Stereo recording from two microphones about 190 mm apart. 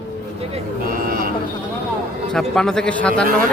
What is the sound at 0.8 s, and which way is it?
Vehicle, 50° right (ahead or behind).